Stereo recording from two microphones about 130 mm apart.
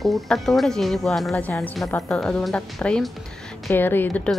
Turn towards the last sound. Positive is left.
turn(degrees=15)  # may be behind; listen again after turning